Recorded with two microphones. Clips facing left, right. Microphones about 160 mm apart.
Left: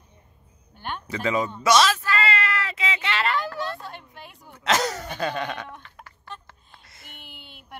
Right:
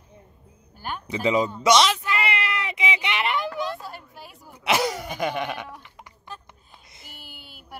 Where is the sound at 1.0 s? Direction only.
20° right (ahead or behind).